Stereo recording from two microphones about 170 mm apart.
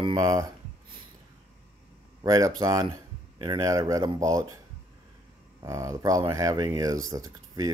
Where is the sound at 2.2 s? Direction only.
20° right (ahead or behind).